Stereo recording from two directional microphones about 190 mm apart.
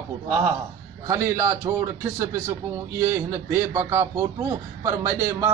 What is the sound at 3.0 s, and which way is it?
A man's voice, 15° right (ahead or behind).